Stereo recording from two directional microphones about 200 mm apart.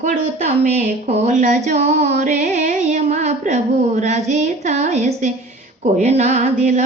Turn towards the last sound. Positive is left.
turn(degrees=-35)  # may be behind; listen again after turning